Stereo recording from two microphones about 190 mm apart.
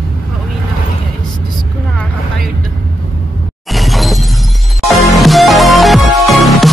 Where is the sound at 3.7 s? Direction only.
Centre (ahead or behind).